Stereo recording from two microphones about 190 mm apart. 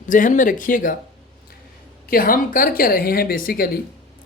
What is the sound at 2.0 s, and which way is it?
A woman's voice, 50° left (ahead or behind).